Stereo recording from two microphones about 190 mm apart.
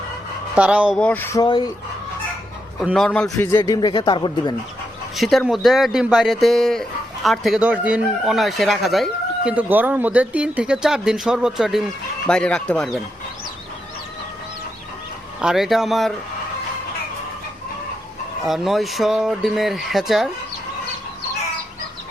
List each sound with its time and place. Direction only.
0.5 s speech: 5° right (ahead or behind)
0.9 s speech: 10° left (ahead or behind)
2.8 s speech: centre (ahead or behind)
3.3 s speech: 15° left (ahead or behind)
5.1 s speech: centre (ahead or behind)
15.4 s speech: centre (ahead or behind)
18.4 s speech: centre (ahead or behind)